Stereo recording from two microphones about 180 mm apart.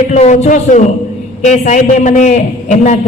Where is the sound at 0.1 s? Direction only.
35° left (ahead or behind).